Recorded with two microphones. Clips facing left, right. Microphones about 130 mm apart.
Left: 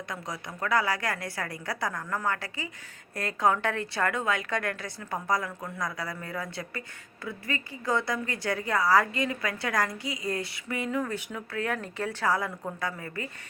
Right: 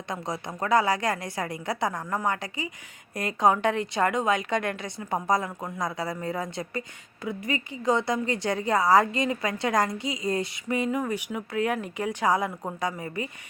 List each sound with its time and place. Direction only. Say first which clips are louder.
0.1 s a woman's voice: right 9 dB; 25° right (ahead or behind)